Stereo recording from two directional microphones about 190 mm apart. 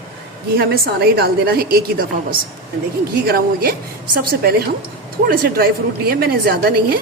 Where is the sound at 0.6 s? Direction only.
55° right (ahead or behind).